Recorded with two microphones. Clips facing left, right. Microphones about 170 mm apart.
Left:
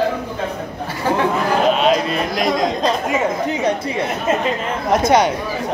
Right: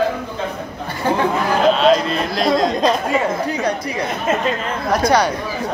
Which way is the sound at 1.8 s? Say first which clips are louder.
Right 2 dB; 10° left (ahead or behind).